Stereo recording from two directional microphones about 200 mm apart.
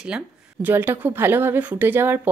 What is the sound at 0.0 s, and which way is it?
Speech, 5° right (ahead or behind).